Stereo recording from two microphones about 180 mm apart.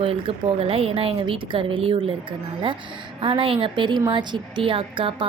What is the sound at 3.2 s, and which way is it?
Speech, 30° right (ahead or behind).